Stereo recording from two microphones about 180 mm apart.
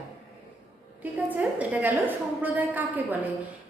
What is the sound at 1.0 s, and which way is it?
A woman's voice, 10° right (ahead or behind).